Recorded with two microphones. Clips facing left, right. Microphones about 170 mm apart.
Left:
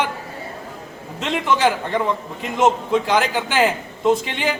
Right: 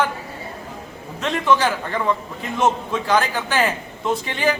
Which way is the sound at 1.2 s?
20° left (ahead or behind).